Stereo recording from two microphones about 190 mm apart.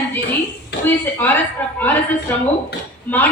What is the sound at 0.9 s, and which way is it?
A woman's voice, 10° left (ahead or behind).